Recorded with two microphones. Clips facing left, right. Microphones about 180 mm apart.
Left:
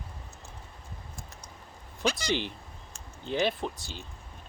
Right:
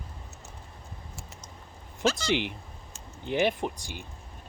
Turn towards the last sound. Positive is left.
turn(degrees=-15)  # may be behind; listen again after turning